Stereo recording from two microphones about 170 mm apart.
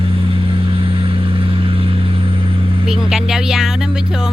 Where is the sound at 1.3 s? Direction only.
30° right (ahead or behind).